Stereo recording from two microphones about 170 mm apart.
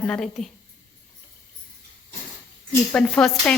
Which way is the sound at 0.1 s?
5° left (ahead or behind).